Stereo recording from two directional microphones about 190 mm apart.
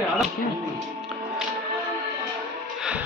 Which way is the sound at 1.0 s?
Centre (ahead or behind).